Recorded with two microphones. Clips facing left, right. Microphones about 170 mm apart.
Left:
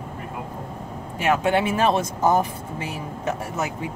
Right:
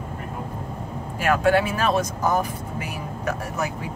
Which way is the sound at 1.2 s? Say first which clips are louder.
Right 1 dB; 20° left (ahead or behind).